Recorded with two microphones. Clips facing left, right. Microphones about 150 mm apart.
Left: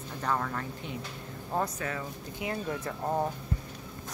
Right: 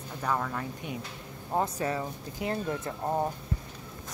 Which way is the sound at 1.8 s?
30° right (ahead or behind).